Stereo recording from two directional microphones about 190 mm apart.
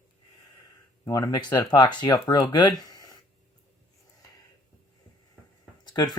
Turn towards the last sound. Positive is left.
turn(degrees=20)  # may be behind; listen again after turning